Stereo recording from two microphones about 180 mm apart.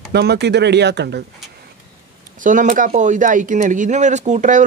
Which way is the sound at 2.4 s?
45° right (ahead or behind).